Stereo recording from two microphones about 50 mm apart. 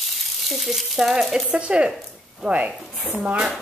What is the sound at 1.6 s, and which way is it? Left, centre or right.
Speech, centre.